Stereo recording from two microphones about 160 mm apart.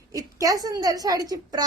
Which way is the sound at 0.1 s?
20° right (ahead or behind).